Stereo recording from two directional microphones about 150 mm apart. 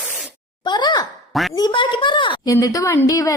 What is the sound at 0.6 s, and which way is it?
Sigh, 30° left (ahead or behind).